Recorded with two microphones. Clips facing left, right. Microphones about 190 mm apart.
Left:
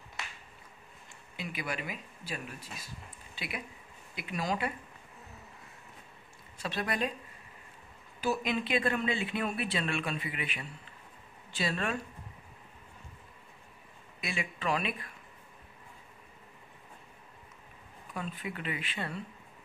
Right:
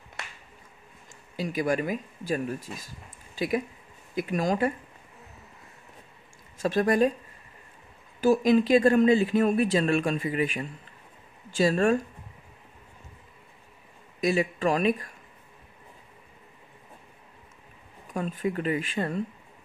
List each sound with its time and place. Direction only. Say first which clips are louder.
1.3 s speech: right 11 dB; 40° right (ahead or behind)
6.6 s speech: right 11 dB; 45° right (ahead or behind)
8.2 s speech: right 11 dB; 45° right (ahead or behind)
14.2 s speech: right 11 dB; 40° right (ahead or behind)
18.1 s speech: right 10 dB; 45° right (ahead or behind)